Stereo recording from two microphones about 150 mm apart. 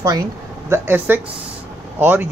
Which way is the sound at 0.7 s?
15° right (ahead or behind).